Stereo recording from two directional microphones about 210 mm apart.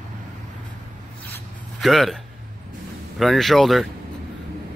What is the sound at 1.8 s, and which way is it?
Speech, centre (ahead or behind).